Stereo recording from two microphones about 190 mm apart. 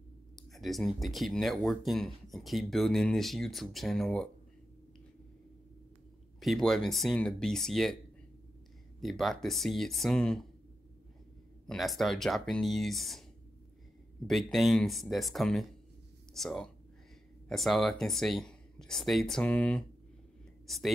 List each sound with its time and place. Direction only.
0.4 s speech: centre (ahead or behind)
6.4 s speech: centre (ahead or behind)
9.0 s speech: centre (ahead or behind)
11.6 s speech: centre (ahead or behind)
14.2 s speech: centre (ahead or behind)